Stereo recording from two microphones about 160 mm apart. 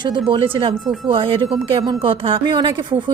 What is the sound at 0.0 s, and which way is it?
A woman's voice, 30° right (ahead or behind).